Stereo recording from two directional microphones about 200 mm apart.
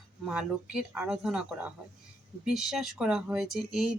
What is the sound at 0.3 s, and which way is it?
Speech, 5° right (ahead or behind).